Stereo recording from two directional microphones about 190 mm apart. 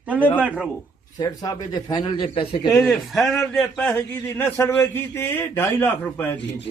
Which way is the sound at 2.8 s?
Centre (ahead or behind).